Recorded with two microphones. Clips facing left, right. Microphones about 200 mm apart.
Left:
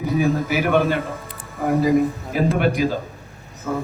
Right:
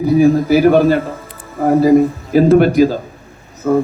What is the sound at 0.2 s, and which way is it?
Speech, 35° right (ahead or behind).